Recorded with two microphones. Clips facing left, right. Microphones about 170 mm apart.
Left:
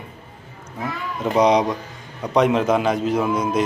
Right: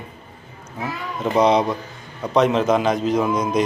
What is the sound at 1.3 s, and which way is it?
A man's voice, 15° left (ahead or behind).